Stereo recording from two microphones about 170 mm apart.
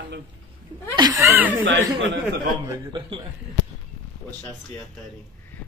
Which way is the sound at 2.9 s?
25° right (ahead or behind).